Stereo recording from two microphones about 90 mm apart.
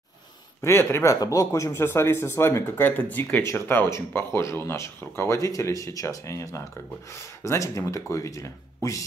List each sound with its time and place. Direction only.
0.6 s speech: 30° left (ahead or behind)